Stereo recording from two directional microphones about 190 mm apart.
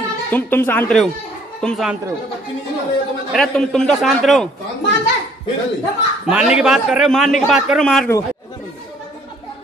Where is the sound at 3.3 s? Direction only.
Centre (ahead or behind).